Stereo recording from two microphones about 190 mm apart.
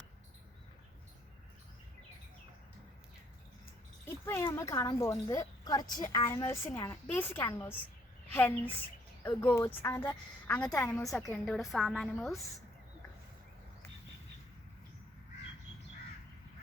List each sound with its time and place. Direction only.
4.0 s a woman's voice: 10° left (ahead or behind)
10.8 s a woman's voice: 15° left (ahead or behind)
11.1 s a woman's voice: centre (ahead or behind)